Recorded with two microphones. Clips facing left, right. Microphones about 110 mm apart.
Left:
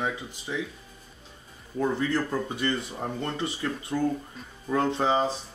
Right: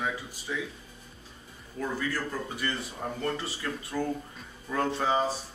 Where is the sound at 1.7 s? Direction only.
25° left (ahead or behind).